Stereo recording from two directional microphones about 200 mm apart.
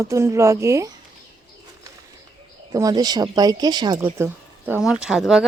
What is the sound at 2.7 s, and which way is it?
Speech, 20° right (ahead or behind).